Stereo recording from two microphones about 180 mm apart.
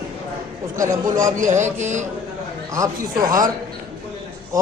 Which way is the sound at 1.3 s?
45° right (ahead or behind).